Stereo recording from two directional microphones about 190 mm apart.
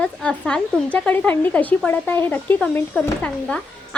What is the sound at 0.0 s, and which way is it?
Speech, 5° left (ahead or behind).